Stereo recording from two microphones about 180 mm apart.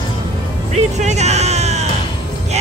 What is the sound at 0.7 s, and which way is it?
Music, 40° right (ahead or behind).